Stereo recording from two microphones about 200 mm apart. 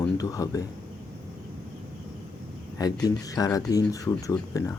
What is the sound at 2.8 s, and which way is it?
Speech, 20° left (ahead or behind).